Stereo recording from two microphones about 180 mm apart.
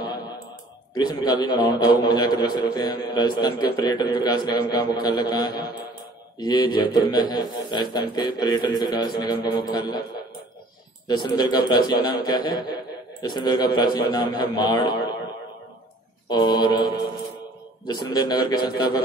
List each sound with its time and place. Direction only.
0.9 s a man's voice: 25° left (ahead or behind)
11.1 s a man's voice: 25° left (ahead or behind)
16.3 s a man's voice: 25° left (ahead or behind)
17.8 s a man's voice: 20° left (ahead or behind)